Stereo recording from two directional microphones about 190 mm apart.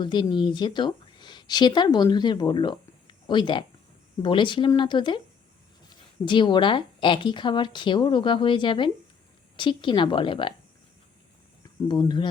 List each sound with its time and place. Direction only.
0.0 s a woman's voice: 25° left (ahead or behind)
6.2 s a woman's voice: 25° left (ahead or behind)
11.9 s a woman's voice: 25° left (ahead or behind)